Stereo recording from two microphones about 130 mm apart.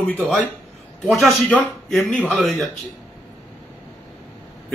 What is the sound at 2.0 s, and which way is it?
Speech, 15° left (ahead or behind).